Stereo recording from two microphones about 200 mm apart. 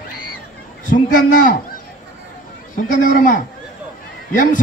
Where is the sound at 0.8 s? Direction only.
40° left (ahead or behind).